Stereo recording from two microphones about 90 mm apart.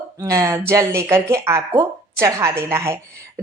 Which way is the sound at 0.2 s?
40° right (ahead or behind).